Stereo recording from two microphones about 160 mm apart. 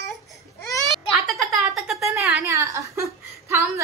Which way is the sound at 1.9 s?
20° right (ahead or behind).